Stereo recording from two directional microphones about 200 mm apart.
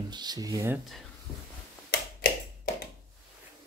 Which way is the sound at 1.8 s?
50° left (ahead or behind).